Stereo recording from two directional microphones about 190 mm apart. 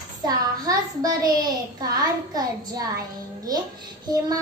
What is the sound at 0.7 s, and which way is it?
Speech, 20° right (ahead or behind).